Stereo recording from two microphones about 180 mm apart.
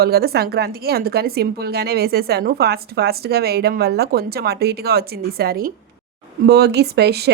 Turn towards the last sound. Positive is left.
turn(degrees=-65)  # may be behind; listen again after turning